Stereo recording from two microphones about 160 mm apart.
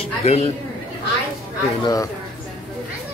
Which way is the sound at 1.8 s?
20° left (ahead or behind).